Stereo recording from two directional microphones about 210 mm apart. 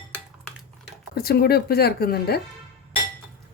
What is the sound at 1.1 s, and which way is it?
A woman's voice, 45° left (ahead or behind).